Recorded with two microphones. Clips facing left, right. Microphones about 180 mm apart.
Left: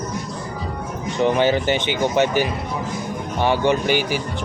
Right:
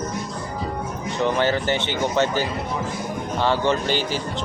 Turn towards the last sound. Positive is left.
turn(degrees=15)  # may be behind; listen again after turning